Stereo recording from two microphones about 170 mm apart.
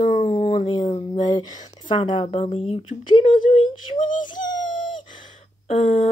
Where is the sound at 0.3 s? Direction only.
35° left (ahead or behind).